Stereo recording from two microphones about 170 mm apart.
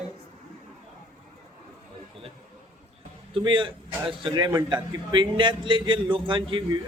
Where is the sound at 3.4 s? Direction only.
30° right (ahead or behind).